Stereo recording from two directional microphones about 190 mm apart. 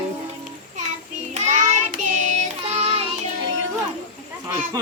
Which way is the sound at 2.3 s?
35° right (ahead or behind).